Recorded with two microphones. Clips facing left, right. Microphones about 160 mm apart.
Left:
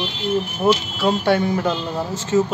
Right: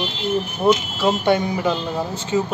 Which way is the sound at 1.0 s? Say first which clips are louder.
Even; centre (ahead or behind).